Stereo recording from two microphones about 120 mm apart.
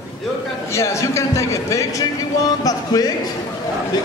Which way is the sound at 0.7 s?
25° left (ahead or behind).